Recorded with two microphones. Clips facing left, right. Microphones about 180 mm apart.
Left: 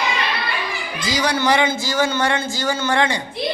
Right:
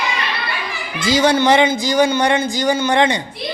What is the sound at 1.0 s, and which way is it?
A man's voice, 25° right (ahead or behind).